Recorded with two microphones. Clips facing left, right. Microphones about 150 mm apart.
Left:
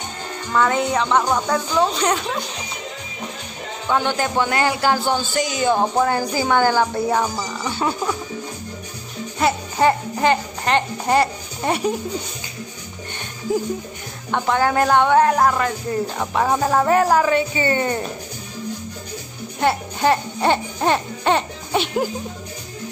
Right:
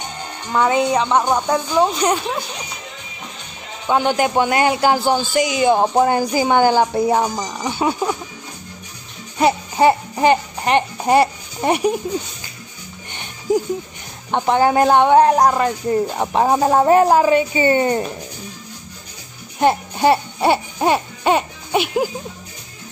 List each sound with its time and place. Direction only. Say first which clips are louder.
0.5 s speech: right 3 dB; 15° right (ahead or behind)
3.9 s speech: right 4 dB; 15° right (ahead or behind)
9.4 s speech: right 3 dB; 15° right (ahead or behind)
13.5 s speech: right 4 dB; 15° right (ahead or behind)
19.6 s speech: right 3 dB; 15° right (ahead or behind)